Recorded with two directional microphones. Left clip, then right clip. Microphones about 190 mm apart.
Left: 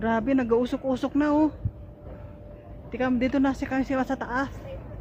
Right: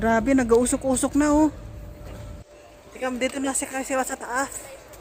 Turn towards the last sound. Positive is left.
turn(degrees=-30)  # may be behind; listen again after turning